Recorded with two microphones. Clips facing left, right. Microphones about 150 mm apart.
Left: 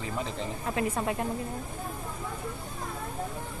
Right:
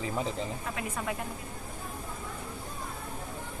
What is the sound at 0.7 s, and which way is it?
Speech, 30° left (ahead or behind).